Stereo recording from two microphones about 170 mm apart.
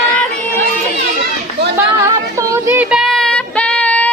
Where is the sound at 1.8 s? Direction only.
15° right (ahead or behind).